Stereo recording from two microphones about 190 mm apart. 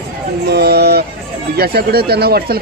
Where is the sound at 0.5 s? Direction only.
60° right (ahead or behind).